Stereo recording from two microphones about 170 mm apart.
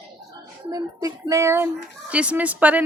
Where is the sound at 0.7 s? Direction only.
20° right (ahead or behind).